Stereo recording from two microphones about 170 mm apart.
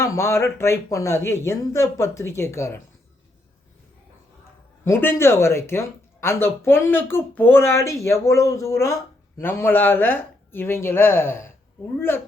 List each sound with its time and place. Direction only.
0.0 s speech: 15° left (ahead or behind)
4.9 s speech: 15° left (ahead or behind)